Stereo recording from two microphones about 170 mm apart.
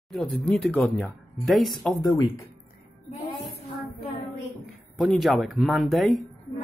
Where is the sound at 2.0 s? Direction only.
20° left (ahead or behind).